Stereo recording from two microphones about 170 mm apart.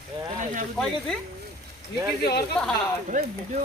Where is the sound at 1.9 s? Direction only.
75° left (ahead or behind).